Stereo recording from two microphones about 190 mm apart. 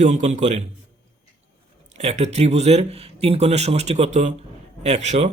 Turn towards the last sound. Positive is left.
turn(degrees=-35)  # may be behind; listen again after turning